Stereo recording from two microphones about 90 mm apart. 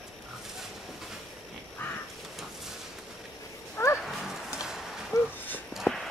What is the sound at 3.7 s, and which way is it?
Wild animals, 30° left (ahead or behind).